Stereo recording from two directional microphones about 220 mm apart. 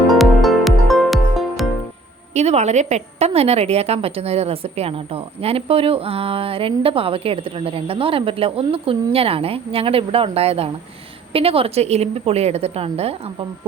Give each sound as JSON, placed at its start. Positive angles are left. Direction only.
{"t": 0.1, "sound": "music", "side_deg": 0}
{"t": 2.3, "sound": "a woman's voice", "side_deg": -30}